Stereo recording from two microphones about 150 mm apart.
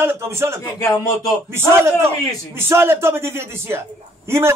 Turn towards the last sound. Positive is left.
turn(degrees=-15)  # may be behind; listen again after turning